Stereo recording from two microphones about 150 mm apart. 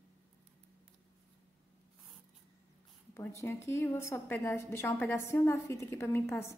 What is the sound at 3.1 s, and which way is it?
A woman's voice, 15° left (ahead or behind).